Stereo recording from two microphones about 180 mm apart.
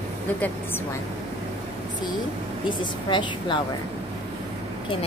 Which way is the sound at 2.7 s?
25° left (ahead or behind).